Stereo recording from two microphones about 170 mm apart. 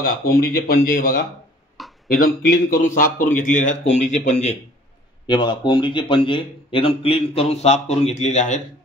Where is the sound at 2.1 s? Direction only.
55° left (ahead or behind); by 4.5 s 40° left (ahead or behind).